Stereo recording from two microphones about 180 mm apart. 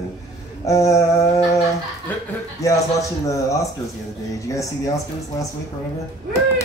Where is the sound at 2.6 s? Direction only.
20° left (ahead or behind).